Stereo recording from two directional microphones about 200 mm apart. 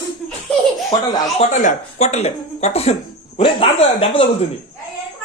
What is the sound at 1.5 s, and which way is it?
Speech, 40° left (ahead or behind).